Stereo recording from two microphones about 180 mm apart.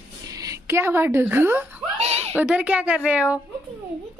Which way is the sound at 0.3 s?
20° right (ahead or behind).